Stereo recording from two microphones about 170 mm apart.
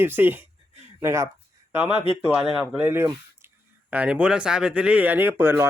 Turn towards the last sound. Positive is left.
turn(degrees=-15)  # may be behind; listen again after turning